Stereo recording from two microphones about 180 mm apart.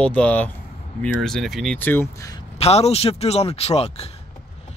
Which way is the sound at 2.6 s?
35° left (ahead or behind).